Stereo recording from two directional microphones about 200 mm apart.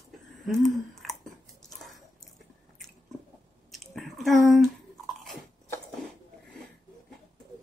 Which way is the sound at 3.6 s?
Centre (ahead or behind).